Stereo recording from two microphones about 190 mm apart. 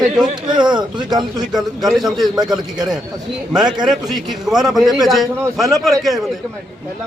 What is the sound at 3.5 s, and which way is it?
A man's voice, 5° right (ahead or behind).